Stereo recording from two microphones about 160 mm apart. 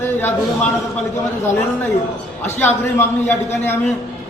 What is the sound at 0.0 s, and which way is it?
Speech, 10° left (ahead or behind).